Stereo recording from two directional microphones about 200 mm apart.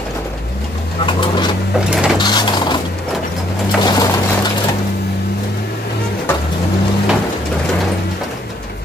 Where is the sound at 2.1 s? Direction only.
20° left (ahead or behind).